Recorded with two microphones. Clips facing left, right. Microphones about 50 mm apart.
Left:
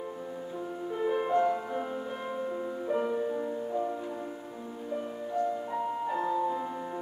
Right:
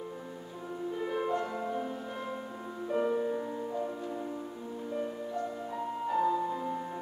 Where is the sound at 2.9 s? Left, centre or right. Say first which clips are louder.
Right 1 dB; centre.